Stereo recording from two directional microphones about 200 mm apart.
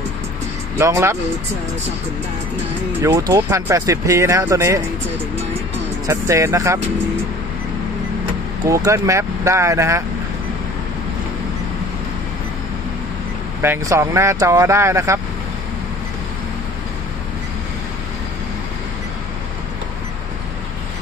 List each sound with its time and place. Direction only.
0.7 s speech: 15° right (ahead or behind)
3.1 s speech: 20° right (ahead or behind)
6.0 s speech: 15° right (ahead or behind)
8.6 s speech: 15° right (ahead or behind)
13.6 s speech: 10° right (ahead or behind)